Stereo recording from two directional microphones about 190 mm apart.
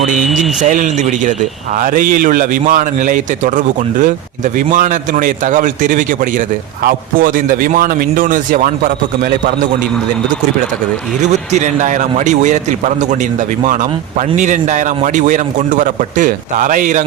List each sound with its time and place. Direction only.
0.6 s a man's voice: 40° right (ahead or behind)
11.2 s a man's voice: 40° right (ahead or behind)
14.2 s a man's voice: 40° right (ahead or behind)